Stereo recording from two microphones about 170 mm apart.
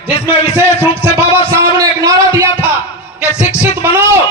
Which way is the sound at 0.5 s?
15° right (ahead or behind).